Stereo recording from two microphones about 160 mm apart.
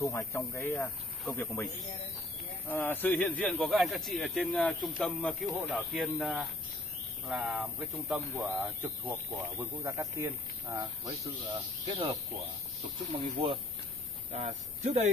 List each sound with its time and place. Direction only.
0.0 s speech: 20° left (ahead or behind)
1.2 s speech: centre (ahead or behind)
2.7 s speech: 10° left (ahead or behind); by 11.1 s 20° right (ahead or behind)
11.9 s speech: 35° right (ahead or behind)
14.3 s speech: 45° right (ahead or behind)